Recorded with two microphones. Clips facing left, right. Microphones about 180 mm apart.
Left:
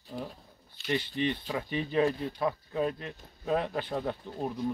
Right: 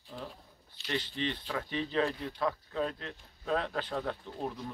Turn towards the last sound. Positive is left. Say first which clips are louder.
# left 3 dB
turn(degrees=15)  # may be behind; listen again after turning